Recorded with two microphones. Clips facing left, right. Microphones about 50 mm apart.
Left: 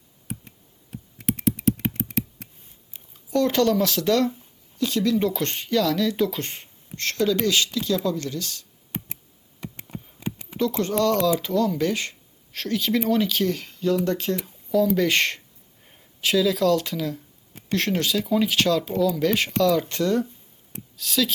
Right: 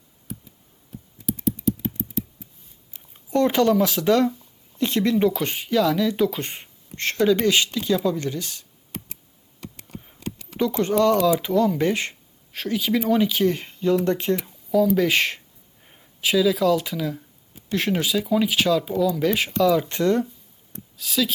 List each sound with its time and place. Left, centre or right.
0.3 s computer keyboard: left
1.5 s a sound: left
3.2 s a sound: right
3.5 s speech: centre
4.8 s speech: right
5.3 s speech: centre
6.9 s speech: right
9.6 s a sound: left
10.6 s speech: centre
12.5 s speech: centre
13.5 s speech: right
14.9 s speech: centre